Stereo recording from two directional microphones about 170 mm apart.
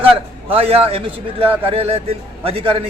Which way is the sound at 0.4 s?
35° right (ahead or behind).